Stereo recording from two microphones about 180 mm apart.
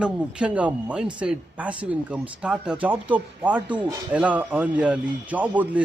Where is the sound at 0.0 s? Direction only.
5° right (ahead or behind).